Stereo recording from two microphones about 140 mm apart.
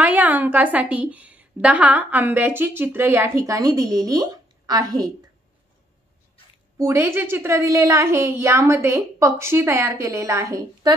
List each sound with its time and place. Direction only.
0.0 s a woman's voice: 10° right (ahead or behind); by 5.1 s 25° right (ahead or behind)
6.8 s a woman's voice: 20° right (ahead or behind)